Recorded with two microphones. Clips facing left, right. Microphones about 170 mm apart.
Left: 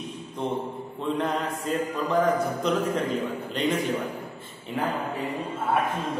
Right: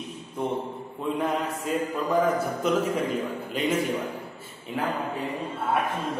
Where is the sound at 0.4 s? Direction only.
10° right (ahead or behind).